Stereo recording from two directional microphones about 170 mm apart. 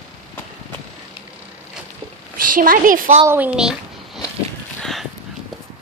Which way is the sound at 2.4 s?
55° right (ahead or behind).